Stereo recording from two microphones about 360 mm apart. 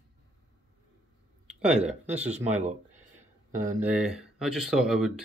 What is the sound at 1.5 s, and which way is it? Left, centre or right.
Speech, centre.